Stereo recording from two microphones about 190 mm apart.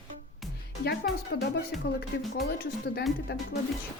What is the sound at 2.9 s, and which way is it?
Speech, 60° left (ahead or behind).